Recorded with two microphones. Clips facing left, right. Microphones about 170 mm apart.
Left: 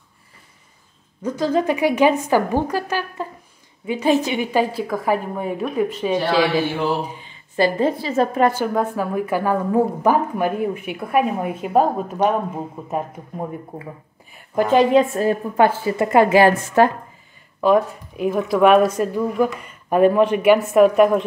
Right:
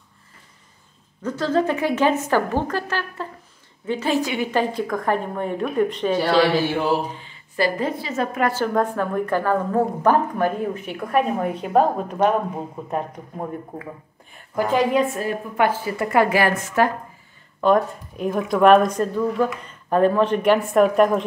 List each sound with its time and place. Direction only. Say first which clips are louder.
1.2 s a woman's voice: left 1 dB; 15° left (ahead or behind)
4.5 s a woman's voice: left 2 dB; 10° left (ahead or behind)
7.2 s a woman's voice: left 4 dB; 25° left (ahead or behind)
8.5 s a woman's voice: left 1 dB; 10° left (ahead or behind)
14.5 s a woman's voice: left 5 dB; 25° left (ahead or behind)
17.6 s a woman's voice: left 2 dB; 5° left (ahead or behind)